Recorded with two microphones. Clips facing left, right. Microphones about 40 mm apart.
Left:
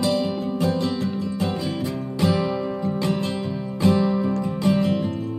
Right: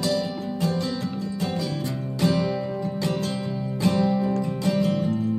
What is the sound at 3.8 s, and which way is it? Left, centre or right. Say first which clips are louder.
Music: left 3 dB; left.